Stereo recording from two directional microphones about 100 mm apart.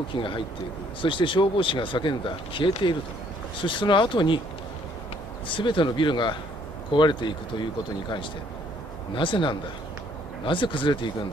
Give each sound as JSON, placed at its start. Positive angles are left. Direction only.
{"t": 0.1, "sound": "speech", "side_deg": 55}
{"t": 5.5, "sound": "speech", "side_deg": 55}
{"t": 9.1, "sound": "speech", "side_deg": 55}